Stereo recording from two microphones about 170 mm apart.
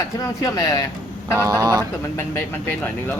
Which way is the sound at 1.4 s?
20° right (ahead or behind).